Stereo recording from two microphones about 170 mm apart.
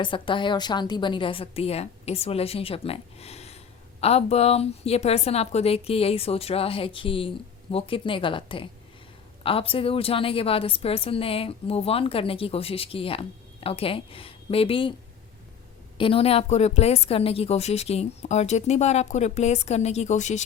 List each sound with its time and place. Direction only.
0.0 s a woman's voice: 30° left (ahead or behind)
16.0 s a woman's voice: 30° left (ahead or behind)